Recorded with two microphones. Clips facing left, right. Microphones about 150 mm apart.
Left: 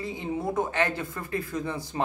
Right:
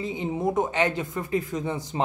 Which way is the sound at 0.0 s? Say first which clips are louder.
Right 4 dB; 20° right (ahead or behind).